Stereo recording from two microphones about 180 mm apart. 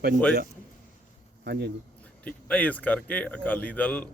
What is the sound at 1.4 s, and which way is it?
Speech, 65° right (ahead or behind).